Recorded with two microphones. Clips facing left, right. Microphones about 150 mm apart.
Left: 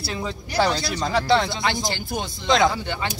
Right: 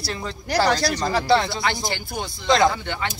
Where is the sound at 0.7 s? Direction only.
85° right.